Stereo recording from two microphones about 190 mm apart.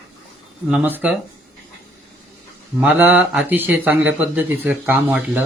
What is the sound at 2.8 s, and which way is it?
Speech, 10° right (ahead or behind).